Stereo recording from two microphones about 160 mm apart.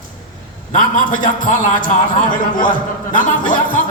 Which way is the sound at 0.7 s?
60° left (ahead or behind).